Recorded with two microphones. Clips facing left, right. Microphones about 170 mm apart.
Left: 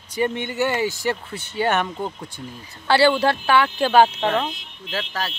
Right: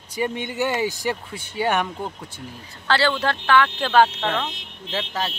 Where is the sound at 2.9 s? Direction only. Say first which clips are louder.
Left 4 dB; 10° left (ahead or behind).